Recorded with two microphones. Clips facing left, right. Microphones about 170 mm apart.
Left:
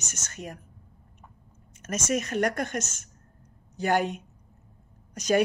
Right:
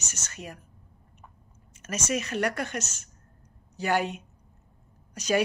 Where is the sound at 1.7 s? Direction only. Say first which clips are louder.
Left 2 dB; 50° left (ahead or behind).